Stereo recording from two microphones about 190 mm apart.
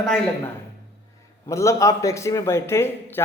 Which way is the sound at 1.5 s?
15° left (ahead or behind).